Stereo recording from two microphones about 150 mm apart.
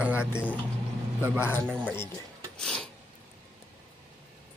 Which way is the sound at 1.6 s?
10° right (ahead or behind).